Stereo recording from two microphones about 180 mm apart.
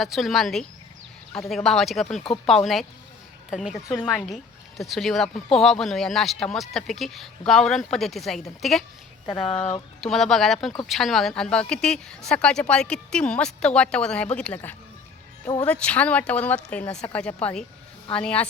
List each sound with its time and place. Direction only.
0.0 s speech: centre (ahead or behind)
3.8 s speech: 5° left (ahead or behind)
9.3 s speech: 30° left (ahead or behind)
10.0 s speech: centre (ahead or behind)